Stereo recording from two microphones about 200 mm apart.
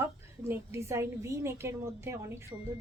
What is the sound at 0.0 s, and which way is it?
A woman's voice, 10° right (ahead or behind).